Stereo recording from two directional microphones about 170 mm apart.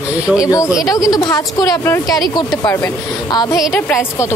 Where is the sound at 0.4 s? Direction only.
20° left (ahead or behind).